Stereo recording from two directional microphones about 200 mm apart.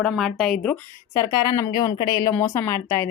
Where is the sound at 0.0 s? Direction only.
Centre (ahead or behind).